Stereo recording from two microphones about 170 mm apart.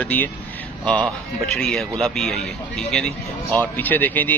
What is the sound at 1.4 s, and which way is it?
A man's voice, centre (ahead or behind).